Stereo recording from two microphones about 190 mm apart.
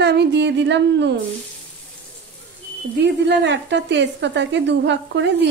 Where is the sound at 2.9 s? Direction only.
65° right (ahead or behind).